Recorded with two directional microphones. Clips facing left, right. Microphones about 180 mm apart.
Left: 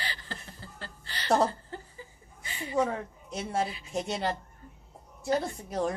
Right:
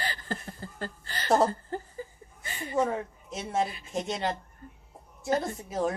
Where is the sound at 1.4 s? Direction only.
45° right (ahead or behind).